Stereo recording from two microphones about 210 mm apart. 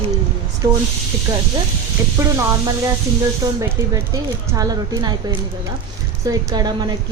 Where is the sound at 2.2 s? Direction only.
15° right (ahead or behind).